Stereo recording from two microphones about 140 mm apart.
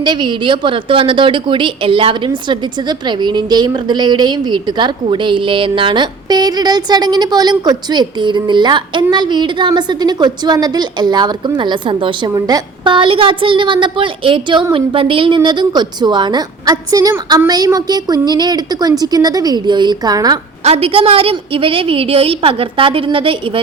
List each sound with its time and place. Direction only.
0.0 s a woman's voice: 35° right (ahead or behind)
20.7 s a woman's voice: 45° right (ahead or behind)